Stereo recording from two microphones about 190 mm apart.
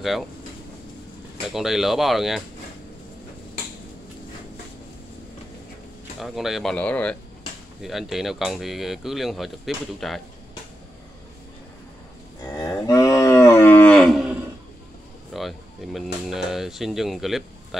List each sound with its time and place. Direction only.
1.5 s speech: centre (ahead or behind)
6.1 s speech: centre (ahead or behind)
12.5 s cattle: 15° left (ahead or behind); by 14.4 s 5° right (ahead or behind)
15.3 s speech: centre (ahead or behind)